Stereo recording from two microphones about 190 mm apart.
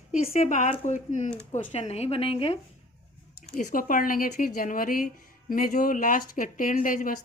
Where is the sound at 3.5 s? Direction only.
45° left (ahead or behind).